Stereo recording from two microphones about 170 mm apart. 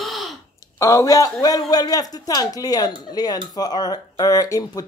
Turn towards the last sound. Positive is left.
turn(degrees=20)  # may be behind; listen again after turning